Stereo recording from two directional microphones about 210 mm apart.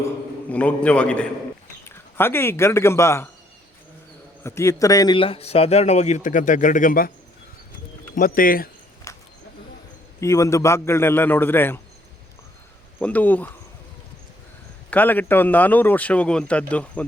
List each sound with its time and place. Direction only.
0.5 s a man's voice: 5° left (ahead or behind)
4.4 s speech: 15° left (ahead or behind); by 7.1 s 40° left (ahead or behind)
8.1 s speech: 40° left (ahead or behind)
9.1 s a sound: 15° left (ahead or behind)
10.2 s a man's voice: 15° left (ahead or behind)
13.0 s a man's voice: 5° left (ahead or behind)
14.8 s a man's voice: 10° left (ahead or behind)